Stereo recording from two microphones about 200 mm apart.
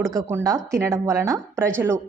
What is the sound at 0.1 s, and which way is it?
Speech, 15° right (ahead or behind).